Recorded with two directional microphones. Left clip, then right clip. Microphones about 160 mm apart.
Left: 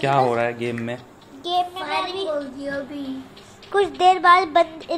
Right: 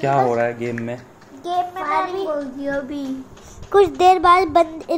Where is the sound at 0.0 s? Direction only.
10° right (ahead or behind).